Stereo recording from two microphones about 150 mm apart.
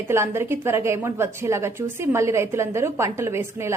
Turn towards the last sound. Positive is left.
turn(degrees=-15)  # may be behind; listen again after turning